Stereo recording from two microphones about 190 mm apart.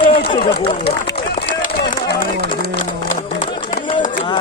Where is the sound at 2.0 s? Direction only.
60° left (ahead or behind).